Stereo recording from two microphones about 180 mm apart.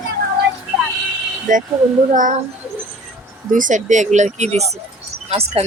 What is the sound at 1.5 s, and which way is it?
Speech, 45° right (ahead or behind).